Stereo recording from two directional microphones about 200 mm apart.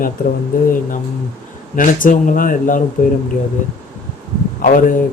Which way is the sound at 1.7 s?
40° left (ahead or behind).